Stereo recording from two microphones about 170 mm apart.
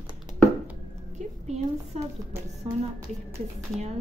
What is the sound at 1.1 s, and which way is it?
Speech, 40° right (ahead or behind).